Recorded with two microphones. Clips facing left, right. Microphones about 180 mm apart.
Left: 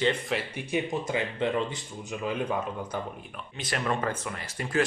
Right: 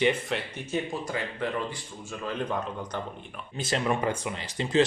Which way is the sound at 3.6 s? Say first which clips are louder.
Right 2 dB; 25° right (ahead or behind).